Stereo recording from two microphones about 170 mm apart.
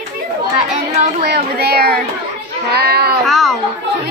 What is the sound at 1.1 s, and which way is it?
A child's voice, 65° right (ahead or behind).